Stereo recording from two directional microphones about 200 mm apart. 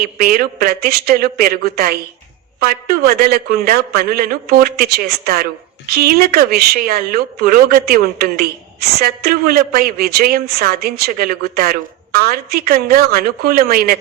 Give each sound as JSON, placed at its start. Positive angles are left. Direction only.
{"t": 0.0, "sound": "speech", "side_deg": -50}